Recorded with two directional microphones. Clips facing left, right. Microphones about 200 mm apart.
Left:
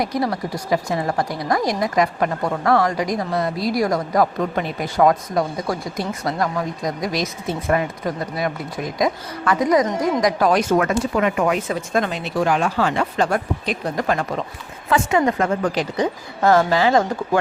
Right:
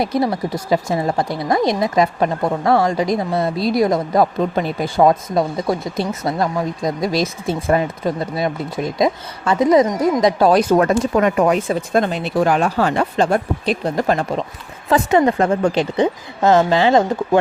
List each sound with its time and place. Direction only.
0.0 s a woman's voice: 25° right (ahead or behind); by 13.1 s 40° right (ahead or behind)
13.1 s a woman's voice: 25° right (ahead or behind)